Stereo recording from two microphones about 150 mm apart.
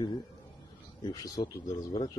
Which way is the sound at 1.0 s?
25° left (ahead or behind).